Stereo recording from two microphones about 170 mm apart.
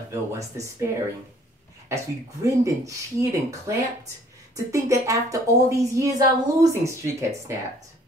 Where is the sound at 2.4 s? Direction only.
20° right (ahead or behind).